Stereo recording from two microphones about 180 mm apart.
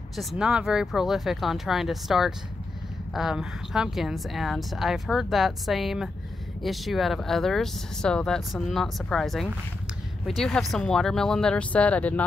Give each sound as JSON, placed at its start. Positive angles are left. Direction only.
{"t": 0.1, "sound": "a woman's voice", "side_deg": 0}